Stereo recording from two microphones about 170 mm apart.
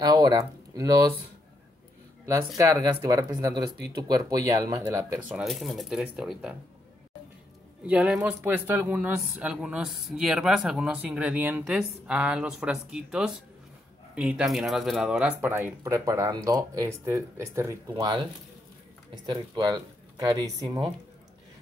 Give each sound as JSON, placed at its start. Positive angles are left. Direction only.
{"t": 0.0, "sound": "speech", "side_deg": -25}
{"t": 2.2, "sound": "speech", "side_deg": -20}
{"t": 5.3, "sound": "speech", "side_deg": 0}
{"t": 7.8, "sound": "speech", "side_deg": -5}
{"t": 17.9, "sound": "speech", "side_deg": -25}
{"t": 19.2, "sound": "speech", "side_deg": -25}